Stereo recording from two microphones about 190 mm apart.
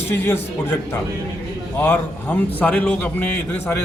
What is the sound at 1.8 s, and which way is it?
A man's voice, 10° left (ahead or behind).